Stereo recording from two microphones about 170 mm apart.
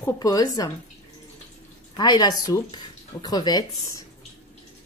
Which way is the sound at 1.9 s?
25° left (ahead or behind).